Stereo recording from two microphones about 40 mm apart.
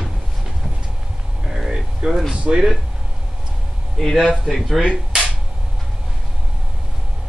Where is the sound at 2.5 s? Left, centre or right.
Right.